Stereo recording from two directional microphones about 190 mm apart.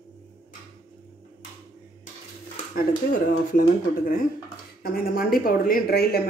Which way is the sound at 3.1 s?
45° left (ahead or behind).